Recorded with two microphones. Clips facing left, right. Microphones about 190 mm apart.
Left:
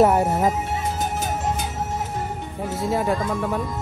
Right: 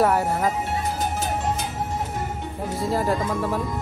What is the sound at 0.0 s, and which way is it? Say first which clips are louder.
Speech: left 3 dB; 20° left (ahead or behind).